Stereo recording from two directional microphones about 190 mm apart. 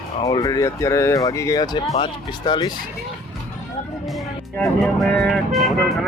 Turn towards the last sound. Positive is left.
turn(degrees=0)  # may be behind; listen again after turning